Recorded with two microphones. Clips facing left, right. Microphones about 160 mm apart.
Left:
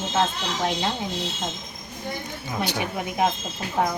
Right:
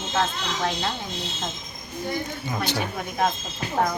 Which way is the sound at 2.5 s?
15° left (ahead or behind).